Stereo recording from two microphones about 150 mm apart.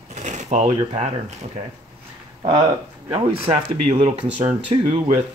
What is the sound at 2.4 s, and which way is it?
Speech, 30° right (ahead or behind).